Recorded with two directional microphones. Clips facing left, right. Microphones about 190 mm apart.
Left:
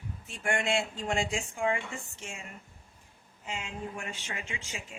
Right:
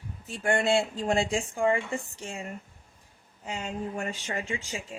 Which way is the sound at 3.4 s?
40° right (ahead or behind).